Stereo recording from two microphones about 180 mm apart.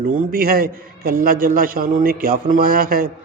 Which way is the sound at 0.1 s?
55° right (ahead or behind).